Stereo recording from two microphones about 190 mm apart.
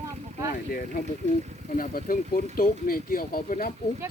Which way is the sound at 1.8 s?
45° left (ahead or behind).